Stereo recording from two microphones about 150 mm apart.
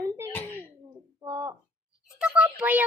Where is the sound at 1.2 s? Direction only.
20° right (ahead or behind).